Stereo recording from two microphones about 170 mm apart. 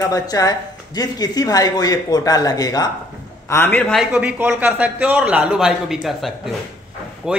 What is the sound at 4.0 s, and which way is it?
A man's voice, 10° right (ahead or behind).